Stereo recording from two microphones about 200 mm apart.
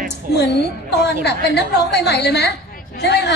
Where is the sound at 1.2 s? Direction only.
55° left (ahead or behind).